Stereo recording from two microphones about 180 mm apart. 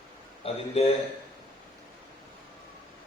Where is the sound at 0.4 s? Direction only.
35° left (ahead or behind).